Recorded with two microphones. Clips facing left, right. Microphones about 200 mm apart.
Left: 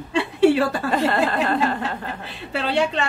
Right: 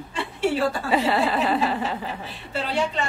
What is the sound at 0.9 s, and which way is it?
Speech, 5° right (ahead or behind).